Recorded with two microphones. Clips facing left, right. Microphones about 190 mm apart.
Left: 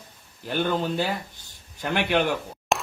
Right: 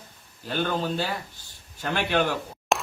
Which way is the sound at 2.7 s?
Centre (ahead or behind).